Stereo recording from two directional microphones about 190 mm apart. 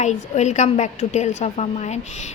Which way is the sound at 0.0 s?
40° left (ahead or behind).